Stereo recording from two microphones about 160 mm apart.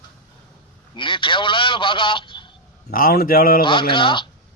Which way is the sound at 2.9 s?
65° left (ahead or behind).